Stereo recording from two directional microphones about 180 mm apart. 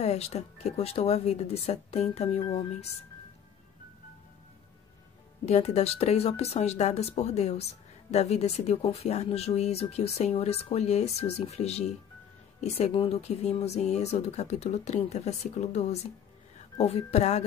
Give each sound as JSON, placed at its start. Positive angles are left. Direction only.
{"t": 0.0, "sound": "speech", "side_deg": 35}
{"t": 5.4, "sound": "speech", "side_deg": 35}